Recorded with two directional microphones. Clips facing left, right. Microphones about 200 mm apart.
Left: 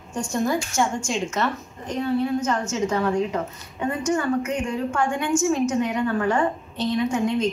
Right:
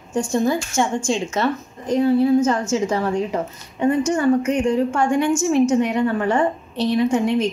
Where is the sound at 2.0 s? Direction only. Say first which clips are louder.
Right 7 dB; 30° right (ahead or behind).